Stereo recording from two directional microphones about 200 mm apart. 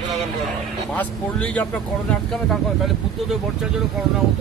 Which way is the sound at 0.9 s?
5° left (ahead or behind).